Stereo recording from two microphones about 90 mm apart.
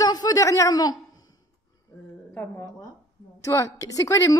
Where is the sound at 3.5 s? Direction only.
35° left (ahead or behind).